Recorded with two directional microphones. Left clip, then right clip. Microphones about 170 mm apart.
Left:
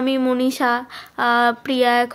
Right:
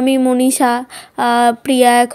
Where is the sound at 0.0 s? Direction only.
35° right (ahead or behind).